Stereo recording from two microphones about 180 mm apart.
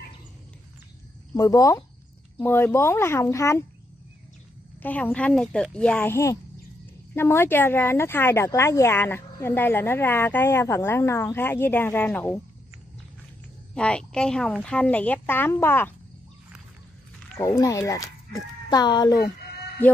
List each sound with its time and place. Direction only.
1.3 s speech: 20° left (ahead or behind)
4.8 s speech: 10° left (ahead or behind)
13.7 s speech: 5° left (ahead or behind)
17.4 s speech: 20° left (ahead or behind)
19.1 s music: 60° left (ahead or behind)